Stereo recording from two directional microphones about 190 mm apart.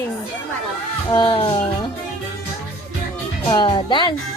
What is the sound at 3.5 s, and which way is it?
Speech, 25° left (ahead or behind).